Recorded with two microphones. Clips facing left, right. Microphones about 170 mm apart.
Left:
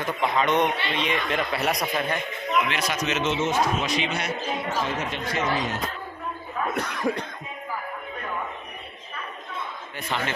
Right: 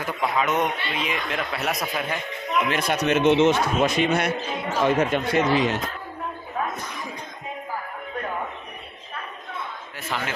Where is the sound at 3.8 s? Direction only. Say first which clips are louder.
Right 6 dB; 50° right (ahead or behind).